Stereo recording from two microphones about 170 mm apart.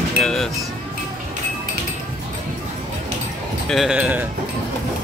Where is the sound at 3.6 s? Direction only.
Centre (ahead or behind).